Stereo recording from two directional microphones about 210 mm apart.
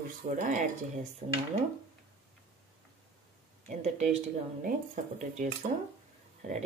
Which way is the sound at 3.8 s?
35° right (ahead or behind).